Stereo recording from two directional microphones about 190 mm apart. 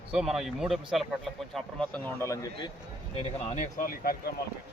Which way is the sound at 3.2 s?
35° left (ahead or behind).